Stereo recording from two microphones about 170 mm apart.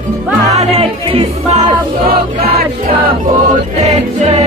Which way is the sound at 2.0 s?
60° right (ahead or behind).